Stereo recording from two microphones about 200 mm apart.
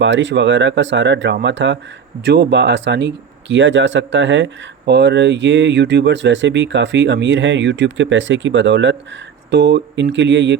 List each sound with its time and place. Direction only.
0.0 s speech: 65° right (ahead or behind)